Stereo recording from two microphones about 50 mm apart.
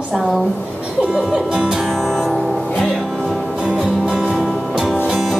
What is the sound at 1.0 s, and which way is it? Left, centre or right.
Speech, centre.